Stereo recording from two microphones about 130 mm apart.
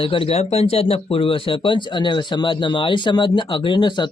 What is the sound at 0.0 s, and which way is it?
Speech, 45° left (ahead or behind).